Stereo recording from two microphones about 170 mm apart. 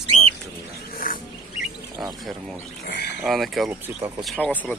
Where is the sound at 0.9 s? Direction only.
55° left (ahead or behind).